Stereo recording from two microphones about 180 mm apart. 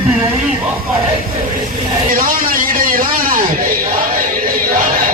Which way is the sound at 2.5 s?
50° right (ahead or behind).